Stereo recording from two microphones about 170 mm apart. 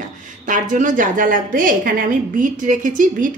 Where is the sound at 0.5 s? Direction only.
50° right (ahead or behind).